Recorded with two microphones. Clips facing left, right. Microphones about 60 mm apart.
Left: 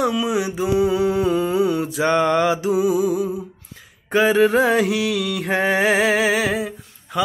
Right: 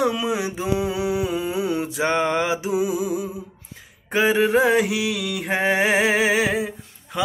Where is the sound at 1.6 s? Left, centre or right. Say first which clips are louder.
Left 4 dB; right.